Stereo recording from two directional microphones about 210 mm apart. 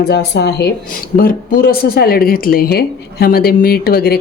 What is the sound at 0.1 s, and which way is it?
Speech, 50° left (ahead or behind).